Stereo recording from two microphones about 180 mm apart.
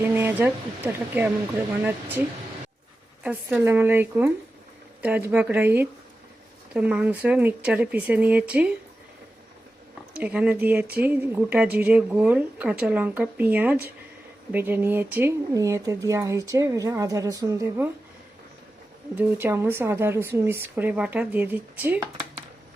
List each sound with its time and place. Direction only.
0.0 s a sound: 10° right (ahead or behind)
0.9 s speech: 10° right (ahead or behind)
3.2 s speech: 10° right (ahead or behind)
10.2 s speech: 5° right (ahead or behind)
19.1 s speech: 10° right (ahead or behind)